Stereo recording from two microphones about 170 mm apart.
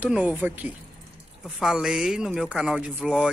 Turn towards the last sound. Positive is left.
turn(degrees=-5)  # may be behind; listen again after turning